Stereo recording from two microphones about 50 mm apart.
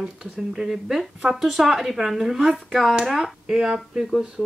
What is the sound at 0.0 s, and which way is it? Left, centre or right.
Speech, centre.